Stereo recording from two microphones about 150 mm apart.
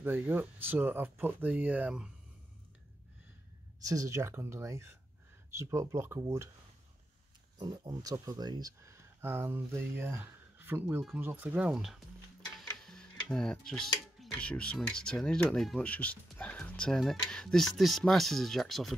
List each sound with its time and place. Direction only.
0.0 s speech: 15° right (ahead or behind)
3.8 s speech: 20° right (ahead or behind)
7.5 s speech: 30° right (ahead or behind); by 18.9 s centre (ahead or behind)